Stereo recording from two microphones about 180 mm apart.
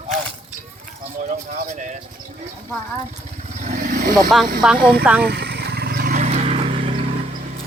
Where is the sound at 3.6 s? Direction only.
50° right (ahead or behind).